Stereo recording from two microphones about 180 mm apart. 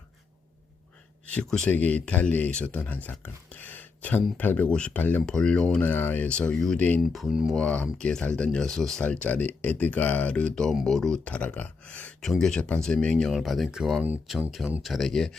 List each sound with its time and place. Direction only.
1.3 s speech: 5° left (ahead or behind)